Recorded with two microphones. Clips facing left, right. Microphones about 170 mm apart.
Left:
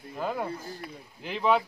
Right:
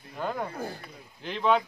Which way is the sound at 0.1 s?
5° left (ahead or behind).